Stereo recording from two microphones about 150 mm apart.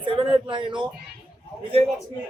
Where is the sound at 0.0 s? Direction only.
35° right (ahead or behind).